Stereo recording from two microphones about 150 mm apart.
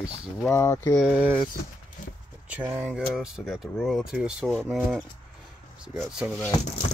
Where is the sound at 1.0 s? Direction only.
10° right (ahead or behind).